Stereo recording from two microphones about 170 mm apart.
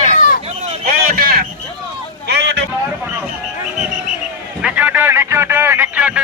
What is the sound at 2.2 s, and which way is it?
Vehicle, 85° right.